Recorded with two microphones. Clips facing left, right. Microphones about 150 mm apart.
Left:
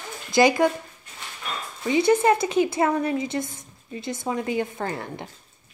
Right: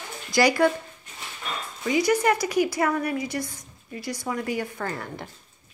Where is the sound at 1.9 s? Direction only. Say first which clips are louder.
Left 3 dB; 25° left (ahead or behind).